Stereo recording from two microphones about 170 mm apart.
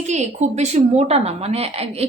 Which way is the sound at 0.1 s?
40° right (ahead or behind).